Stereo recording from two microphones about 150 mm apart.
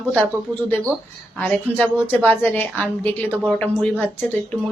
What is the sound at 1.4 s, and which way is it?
A woman's voice, 10° left (ahead or behind).